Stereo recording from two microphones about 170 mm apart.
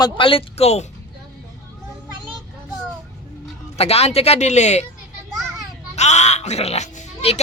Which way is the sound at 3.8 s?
35° left (ahead or behind).